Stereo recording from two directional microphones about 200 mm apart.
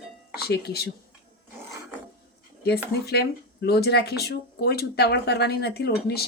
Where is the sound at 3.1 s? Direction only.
55° left (ahead or behind).